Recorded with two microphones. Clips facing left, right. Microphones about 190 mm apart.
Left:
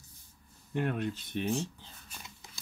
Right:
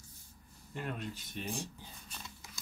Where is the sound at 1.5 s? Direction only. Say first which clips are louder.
Left 8 dB; 10° right (ahead or behind).